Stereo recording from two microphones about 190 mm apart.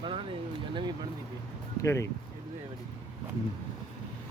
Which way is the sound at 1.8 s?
15° left (ahead or behind).